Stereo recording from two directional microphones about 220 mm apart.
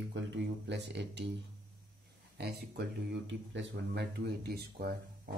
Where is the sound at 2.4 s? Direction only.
45° right (ahead or behind).